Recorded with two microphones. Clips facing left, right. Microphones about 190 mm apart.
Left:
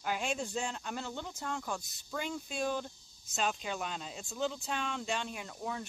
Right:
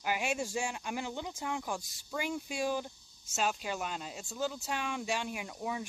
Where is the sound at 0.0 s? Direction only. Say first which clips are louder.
Right 1 dB; 10° right (ahead or behind).